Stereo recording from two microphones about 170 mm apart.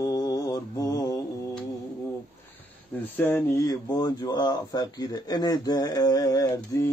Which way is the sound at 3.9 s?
25° left (ahead or behind).